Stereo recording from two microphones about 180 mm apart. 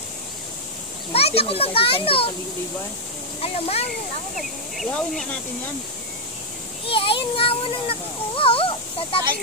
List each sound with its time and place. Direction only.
1.1 s a child's voice: 35° left (ahead or behind)
3.3 s a child's voice: 35° left (ahead or behind)
4.7 s speech: centre (ahead or behind)
6.9 s a child's voice: 30° left (ahead or behind)